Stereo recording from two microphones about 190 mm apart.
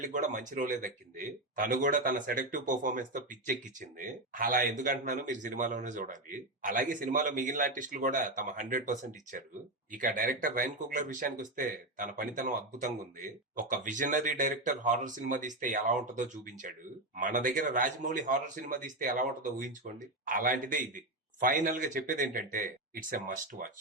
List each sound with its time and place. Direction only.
0.0 s speech: 40° right (ahead or behind)